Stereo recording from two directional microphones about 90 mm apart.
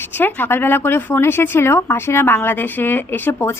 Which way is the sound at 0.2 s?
20° left (ahead or behind).